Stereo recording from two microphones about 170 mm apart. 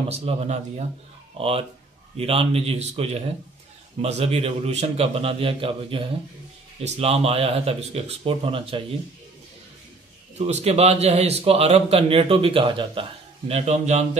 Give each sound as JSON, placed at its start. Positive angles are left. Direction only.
{"t": 0.1, "sound": "a man's voice", "side_deg": -40}
{"t": 10.3, "sound": "a man's voice", "side_deg": -40}